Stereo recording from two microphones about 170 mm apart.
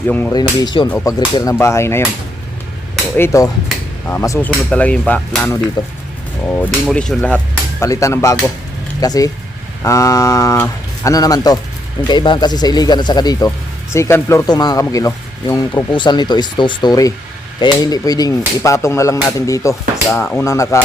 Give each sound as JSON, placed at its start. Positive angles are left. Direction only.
{"t": 0.1, "sound": "speech", "side_deg": 10}
{"t": 0.3, "sound": "speech", "side_deg": 25}
{"t": 3.2, "sound": "speech", "side_deg": 15}
{"t": 5.8, "sound": "speech", "side_deg": 20}
{"t": 6.8, "sound": "speech", "side_deg": 5}
{"t": 20.1, "sound": "speech", "side_deg": 5}
{"t": 20.4, "sound": "speech", "side_deg": 15}